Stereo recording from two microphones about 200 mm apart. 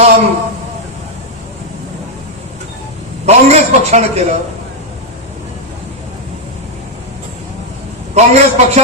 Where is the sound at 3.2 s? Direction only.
35° right (ahead or behind).